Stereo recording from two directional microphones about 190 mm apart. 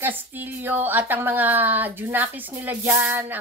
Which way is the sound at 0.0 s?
10° right (ahead or behind).